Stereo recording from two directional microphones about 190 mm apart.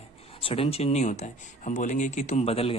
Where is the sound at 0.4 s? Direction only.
30° left (ahead or behind).